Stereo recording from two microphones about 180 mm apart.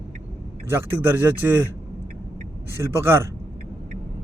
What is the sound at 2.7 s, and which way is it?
Speech, 15° right (ahead or behind).